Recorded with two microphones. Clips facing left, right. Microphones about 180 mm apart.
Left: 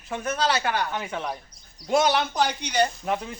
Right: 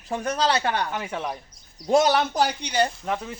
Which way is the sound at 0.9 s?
10° right (ahead or behind).